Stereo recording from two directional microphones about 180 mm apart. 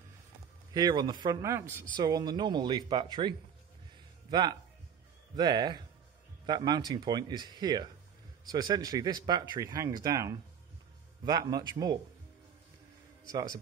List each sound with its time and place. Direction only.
0.7 s speech: 25° right (ahead or behind)